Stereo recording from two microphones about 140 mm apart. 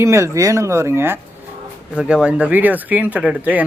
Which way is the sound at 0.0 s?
20° right (ahead or behind).